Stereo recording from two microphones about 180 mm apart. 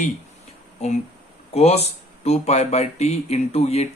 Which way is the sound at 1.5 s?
35° left (ahead or behind).